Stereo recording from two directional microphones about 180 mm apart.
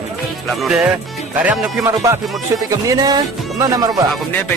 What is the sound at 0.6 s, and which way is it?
Speech, 5° right (ahead or behind).